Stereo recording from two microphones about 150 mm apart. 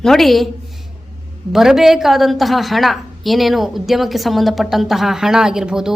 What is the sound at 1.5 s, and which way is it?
A woman's voice, 5° right (ahead or behind).